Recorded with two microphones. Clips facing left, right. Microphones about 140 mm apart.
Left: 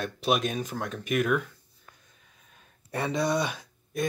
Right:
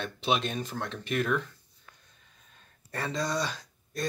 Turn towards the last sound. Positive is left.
turn(degrees=15)  # may be behind; listen again after turning